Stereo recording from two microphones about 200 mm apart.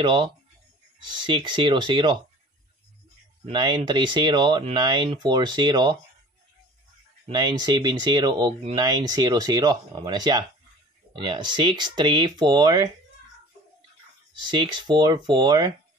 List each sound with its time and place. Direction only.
0.0 s speech: 25° right (ahead or behind)
3.4 s speech: 20° right (ahead or behind)
7.2 s speech: 20° right (ahead or behind)
14.5 s speech: 25° right (ahead or behind)